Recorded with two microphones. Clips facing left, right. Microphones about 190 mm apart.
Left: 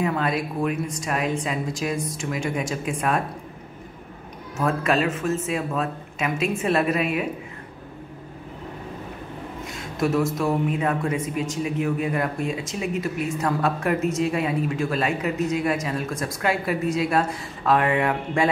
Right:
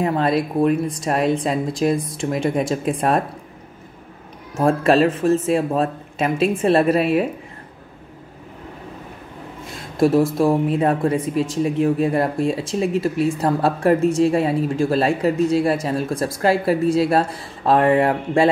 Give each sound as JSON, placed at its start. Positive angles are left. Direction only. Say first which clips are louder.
{"t": 0.0, "sound": "a man's voice", "louder": "right 5 dB", "side_deg": -35}
{"t": 4.6, "sound": "a man's voice", "louder": "right 7 dB", "side_deg": -30}
{"t": 9.9, "sound": "a man's voice", "louder": "right 7 dB", "side_deg": -30}